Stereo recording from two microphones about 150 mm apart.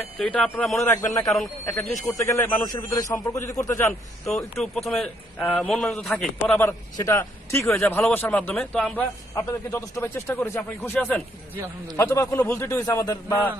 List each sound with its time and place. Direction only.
0.0 s a man's voice: 10° left (ahead or behind)
0.7 s a man's voice: 20° left (ahead or behind)
1.2 s speech: centre (ahead or behind)
2.1 s a man's voice: 15° left (ahead or behind)
4.4 s a man's voice: centre (ahead or behind)
7.0 s a man's voice: 20° left (ahead or behind)
12.0 s a man's voice: 20° left (ahead or behind)